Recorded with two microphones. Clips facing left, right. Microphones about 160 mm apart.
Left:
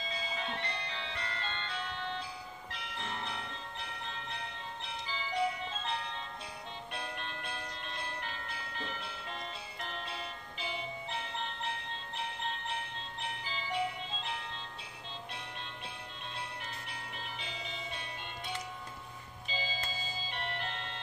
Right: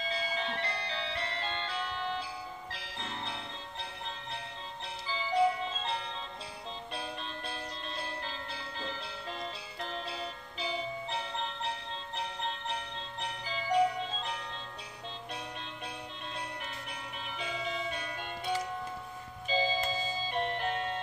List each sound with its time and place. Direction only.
0.7 s music: 35° right (ahead or behind)
5.0 s music: 35° right (ahead or behind)
6.9 s bell: 35° right (ahead or behind)
9.8 s music: 35° right (ahead or behind)
13.2 s music: 40° right (ahead or behind)
19.5 s music: 45° right (ahead or behind)